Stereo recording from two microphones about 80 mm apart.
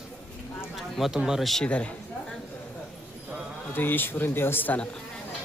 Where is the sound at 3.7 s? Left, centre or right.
Left.